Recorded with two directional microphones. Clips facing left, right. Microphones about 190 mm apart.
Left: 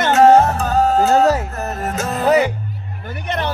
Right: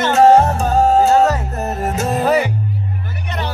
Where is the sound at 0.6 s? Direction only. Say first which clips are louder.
Right 2 dB; 25° right (ahead or behind).